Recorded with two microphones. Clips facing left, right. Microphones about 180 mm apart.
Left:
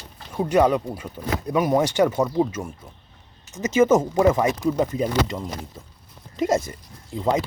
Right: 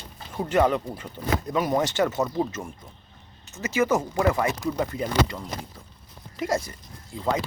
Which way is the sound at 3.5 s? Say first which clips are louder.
Left 6 dB; 20° left (ahead or behind).